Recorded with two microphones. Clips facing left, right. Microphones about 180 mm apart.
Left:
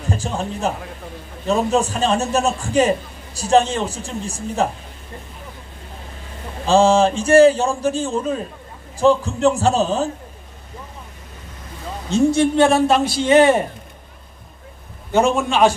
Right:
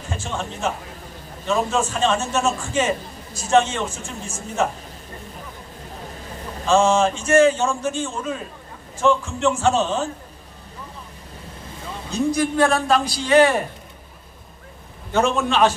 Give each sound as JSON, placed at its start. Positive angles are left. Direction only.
{"t": 0.1, "sound": "a man's voice", "side_deg": 35}
{"t": 6.6, "sound": "a man's voice", "side_deg": 35}
{"t": 12.1, "sound": "a woman's voice", "side_deg": 25}
{"t": 15.1, "sound": "a man's voice", "side_deg": 15}